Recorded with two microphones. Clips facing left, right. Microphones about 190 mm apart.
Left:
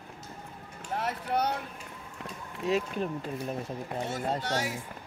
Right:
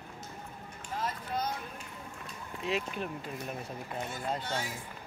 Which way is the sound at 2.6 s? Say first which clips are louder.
Left 5 dB; 40° left (ahead or behind).